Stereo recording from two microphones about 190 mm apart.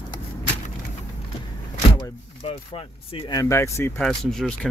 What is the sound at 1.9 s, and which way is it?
Speech, 30° left (ahead or behind).